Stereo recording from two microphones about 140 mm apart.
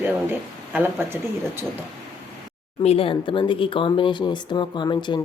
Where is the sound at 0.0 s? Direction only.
10° right (ahead or behind).